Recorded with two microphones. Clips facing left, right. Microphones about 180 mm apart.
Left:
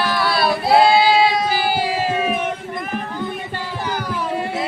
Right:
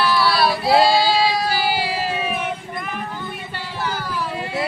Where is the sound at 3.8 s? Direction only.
15° left (ahead or behind).